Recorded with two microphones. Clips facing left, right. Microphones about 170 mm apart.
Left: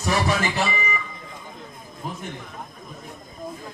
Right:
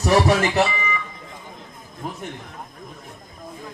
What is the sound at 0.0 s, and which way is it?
Speech, 65° right (ahead or behind).